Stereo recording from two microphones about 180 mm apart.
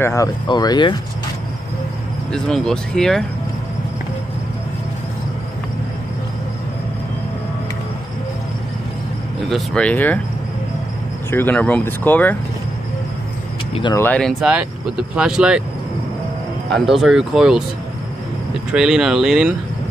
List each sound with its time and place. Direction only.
0.0 s speech: 15° left (ahead or behind)
2.3 s speech: 5° left (ahead or behind)
9.5 s speech: 5° left (ahead or behind)
11.2 s speech: 10° left (ahead or behind)
13.9 s speech: 10° left (ahead or behind)
14.4 s speech: 5° right (ahead or behind)
16.6 s speech: centre (ahead or behind)
18.7 s speech: 5° right (ahead or behind)